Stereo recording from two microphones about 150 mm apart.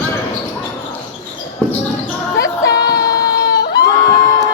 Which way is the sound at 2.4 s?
25° left (ahead or behind).